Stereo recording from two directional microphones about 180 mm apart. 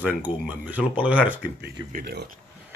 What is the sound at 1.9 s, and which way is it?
Speech, 60° right (ahead or behind).